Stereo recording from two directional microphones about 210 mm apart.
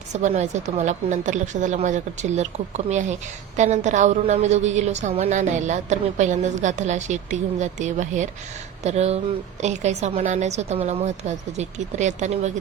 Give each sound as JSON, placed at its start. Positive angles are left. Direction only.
{"t": 0.1, "sound": "a woman's voice", "side_deg": -35}